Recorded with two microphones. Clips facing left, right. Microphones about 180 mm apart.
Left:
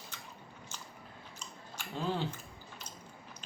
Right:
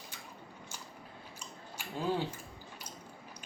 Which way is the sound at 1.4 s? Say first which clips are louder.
Even; 10° right (ahead or behind).